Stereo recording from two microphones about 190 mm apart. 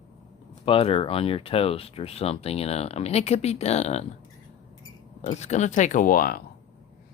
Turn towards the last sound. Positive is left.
turn(degrees=50)  # may be behind; listen again after turning